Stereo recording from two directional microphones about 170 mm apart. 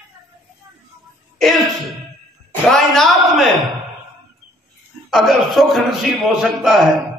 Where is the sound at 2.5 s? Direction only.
Centre (ahead or behind).